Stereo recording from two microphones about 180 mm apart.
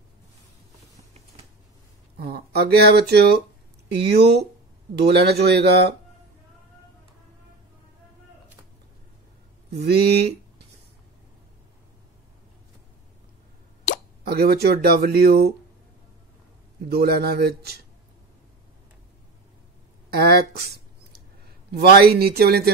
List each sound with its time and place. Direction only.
2.1 s speech: 60° right (ahead or behind)
9.7 s speech: 65° right (ahead or behind)
14.2 s speech: 60° right (ahead or behind)
16.9 s speech: 60° right (ahead or behind)
20.1 s speech: 60° right (ahead or behind)